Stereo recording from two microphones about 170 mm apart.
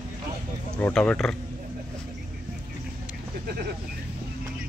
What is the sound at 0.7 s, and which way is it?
Speech, 10° left (ahead or behind).